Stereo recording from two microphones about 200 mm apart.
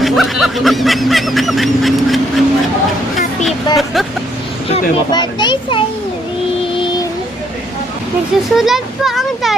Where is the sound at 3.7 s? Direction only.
20° left (ahead or behind).